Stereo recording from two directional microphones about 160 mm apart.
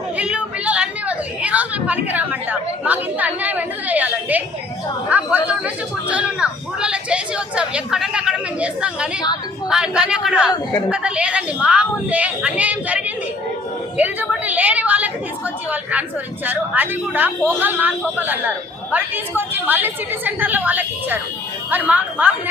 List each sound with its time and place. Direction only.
0.2 s a sound: 5° right (ahead or behind)
9.6 s speech: 5° right (ahead or behind)
10.5 s a woman's voice: 20° left (ahead or behind)
10.9 s a woman's voice: 5° right (ahead or behind)